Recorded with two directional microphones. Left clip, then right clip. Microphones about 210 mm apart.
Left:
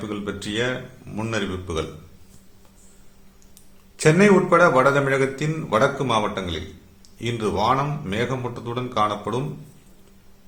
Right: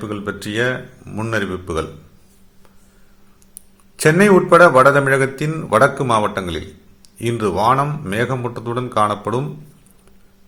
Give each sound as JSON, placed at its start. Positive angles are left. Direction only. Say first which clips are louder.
{"t": 0.0, "sound": "a man's voice", "louder": "right 4 dB", "side_deg": -25}
{"t": 3.9, "sound": "a man's voice", "louder": "right 4 dB", "side_deg": -25}